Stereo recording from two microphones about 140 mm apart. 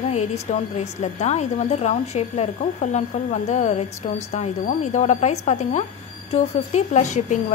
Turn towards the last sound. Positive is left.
turn(degrees=60)  # may be behind; listen again after turning